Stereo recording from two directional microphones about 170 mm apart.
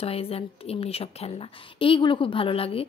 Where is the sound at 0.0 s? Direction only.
35° left (ahead or behind).